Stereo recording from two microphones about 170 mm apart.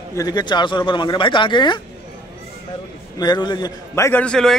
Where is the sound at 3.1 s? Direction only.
25° left (ahead or behind); by 4.5 s 5° left (ahead or behind).